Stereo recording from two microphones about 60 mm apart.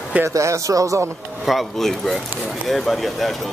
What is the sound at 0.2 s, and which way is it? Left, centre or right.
Speech, right.